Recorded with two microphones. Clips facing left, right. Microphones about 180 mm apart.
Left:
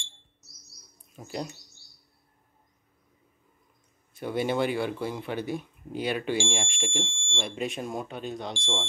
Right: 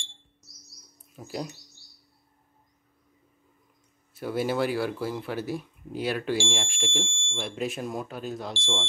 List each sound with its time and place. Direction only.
1.1 s speech: 5° right (ahead or behind)
4.1 s speech: 5° right (ahead or behind)